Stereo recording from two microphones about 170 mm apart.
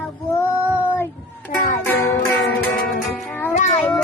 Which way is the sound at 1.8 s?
15° left (ahead or behind).